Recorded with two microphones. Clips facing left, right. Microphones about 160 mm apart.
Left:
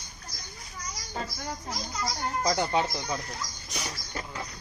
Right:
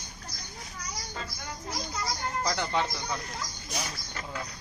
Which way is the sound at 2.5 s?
20° left (ahead or behind).